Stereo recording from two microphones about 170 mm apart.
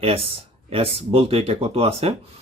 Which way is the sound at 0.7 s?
35° right (ahead or behind).